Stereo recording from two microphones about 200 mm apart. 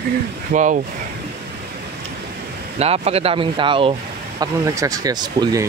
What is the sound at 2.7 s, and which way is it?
Speech, 30° right (ahead or behind).